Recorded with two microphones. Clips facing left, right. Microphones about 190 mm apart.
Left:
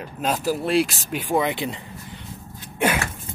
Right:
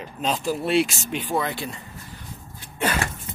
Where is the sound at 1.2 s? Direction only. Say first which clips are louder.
Left 5 dB; 15° left (ahead or behind).